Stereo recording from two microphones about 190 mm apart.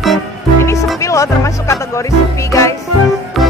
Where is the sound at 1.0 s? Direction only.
15° left (ahead or behind).